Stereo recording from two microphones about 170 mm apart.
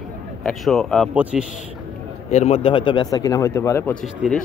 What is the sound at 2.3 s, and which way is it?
A man's voice, 40° left (ahead or behind).